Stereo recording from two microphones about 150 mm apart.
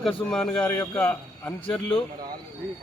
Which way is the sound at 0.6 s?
15° left (ahead or behind).